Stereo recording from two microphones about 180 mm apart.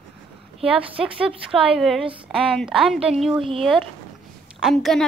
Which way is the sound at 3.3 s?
30° right (ahead or behind).